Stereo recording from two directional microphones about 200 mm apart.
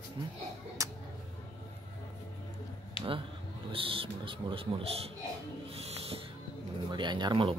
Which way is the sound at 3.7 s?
25° right (ahead or behind).